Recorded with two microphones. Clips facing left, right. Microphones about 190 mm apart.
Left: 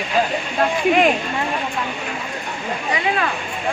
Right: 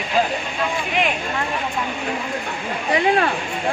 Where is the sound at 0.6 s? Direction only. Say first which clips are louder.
Left 8 dB; 50° left (ahead or behind).